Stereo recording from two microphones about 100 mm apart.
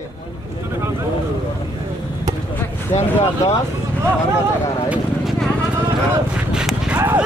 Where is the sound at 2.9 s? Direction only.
90° left.